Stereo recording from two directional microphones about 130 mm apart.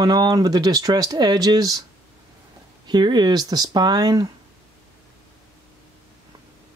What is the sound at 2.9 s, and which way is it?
Speech, 35° right (ahead or behind).